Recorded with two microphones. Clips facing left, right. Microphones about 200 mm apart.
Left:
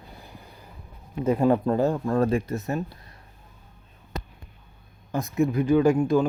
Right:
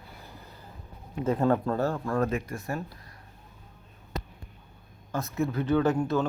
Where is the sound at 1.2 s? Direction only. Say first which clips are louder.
Left 4 dB; 15° left (ahead or behind).